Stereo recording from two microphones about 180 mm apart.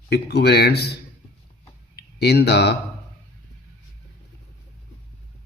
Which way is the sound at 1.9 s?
65° left (ahead or behind).